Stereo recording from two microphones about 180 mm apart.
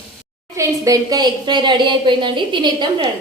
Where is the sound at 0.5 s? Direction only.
20° right (ahead or behind).